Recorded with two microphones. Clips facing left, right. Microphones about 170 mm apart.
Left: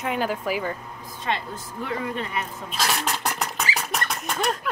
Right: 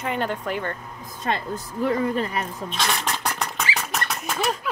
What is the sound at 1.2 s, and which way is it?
Speech, 40° right (ahead or behind).